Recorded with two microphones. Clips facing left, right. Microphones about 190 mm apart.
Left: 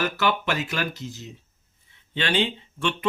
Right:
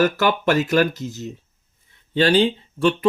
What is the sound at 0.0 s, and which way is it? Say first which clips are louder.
Speech: right 7 dB; 45° right (ahead or behind).